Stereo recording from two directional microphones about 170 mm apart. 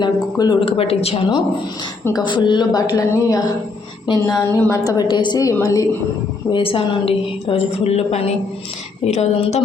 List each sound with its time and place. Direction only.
0.0 s speech: 25° left (ahead or behind)
6.5 s a woman's voice: 30° left (ahead or behind)